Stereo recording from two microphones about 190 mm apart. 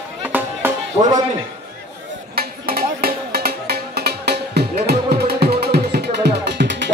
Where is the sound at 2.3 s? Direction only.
55° right (ahead or behind).